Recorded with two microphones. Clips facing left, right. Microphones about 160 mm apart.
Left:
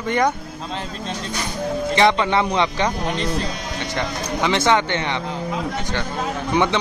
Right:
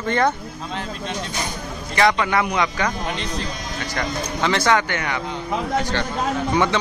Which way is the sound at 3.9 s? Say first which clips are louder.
Left 1 dB; 20° left (ahead or behind).